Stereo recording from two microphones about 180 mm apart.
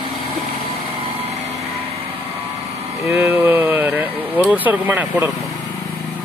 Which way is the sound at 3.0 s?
15° right (ahead or behind).